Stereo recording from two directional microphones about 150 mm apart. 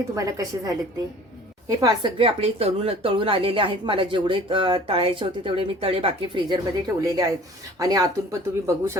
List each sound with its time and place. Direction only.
0.2 s speech: 20° right (ahead or behind)
1.8 s speech: 30° right (ahead or behind)